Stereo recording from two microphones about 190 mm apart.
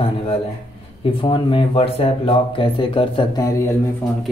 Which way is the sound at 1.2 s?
25° left (ahead or behind).